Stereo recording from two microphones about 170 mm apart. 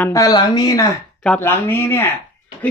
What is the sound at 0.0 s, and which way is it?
Speech, 20° left (ahead or behind).